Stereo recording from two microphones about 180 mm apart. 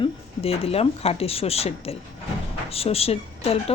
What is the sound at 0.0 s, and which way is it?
A woman's voice, 35° left (ahead or behind).